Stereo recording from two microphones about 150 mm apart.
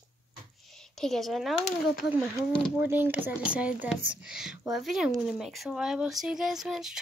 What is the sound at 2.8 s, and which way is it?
Speech, 10° right (ahead or behind).